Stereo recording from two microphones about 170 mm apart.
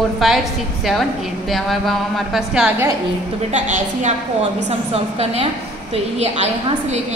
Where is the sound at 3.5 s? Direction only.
45° right (ahead or behind).